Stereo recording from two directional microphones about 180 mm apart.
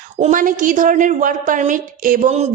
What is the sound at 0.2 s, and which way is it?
A woman's voice, 45° right (ahead or behind).